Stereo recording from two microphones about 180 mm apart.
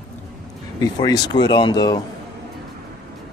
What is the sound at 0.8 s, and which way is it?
Speech, 20° left (ahead or behind).